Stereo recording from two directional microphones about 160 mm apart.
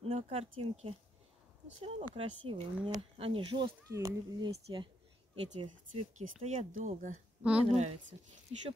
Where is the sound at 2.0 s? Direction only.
35° right (ahead or behind).